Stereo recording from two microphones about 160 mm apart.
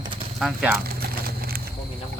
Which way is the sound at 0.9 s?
70° right (ahead or behind).